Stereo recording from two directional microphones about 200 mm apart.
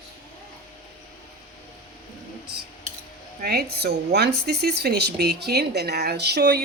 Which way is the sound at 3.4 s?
55° right (ahead or behind).